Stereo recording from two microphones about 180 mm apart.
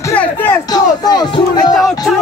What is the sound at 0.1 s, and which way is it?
Music, 10° left (ahead or behind).